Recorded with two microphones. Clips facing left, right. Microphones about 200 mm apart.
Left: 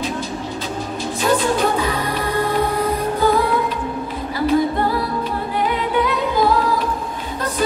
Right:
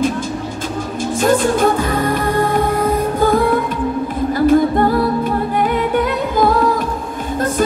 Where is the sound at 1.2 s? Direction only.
50° right (ahead or behind).